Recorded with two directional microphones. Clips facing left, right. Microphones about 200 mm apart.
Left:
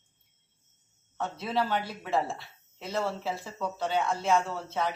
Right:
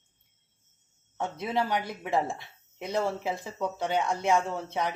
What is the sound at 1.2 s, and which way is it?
Speech, 15° right (ahead or behind).